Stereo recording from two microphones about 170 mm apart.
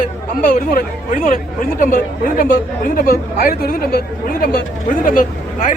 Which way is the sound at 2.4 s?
55° left (ahead or behind).